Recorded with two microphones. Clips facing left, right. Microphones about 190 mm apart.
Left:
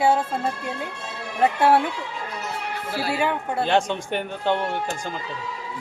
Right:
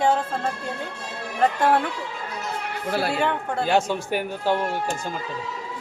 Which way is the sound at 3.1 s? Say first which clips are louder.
Even; 5° left (ahead or behind).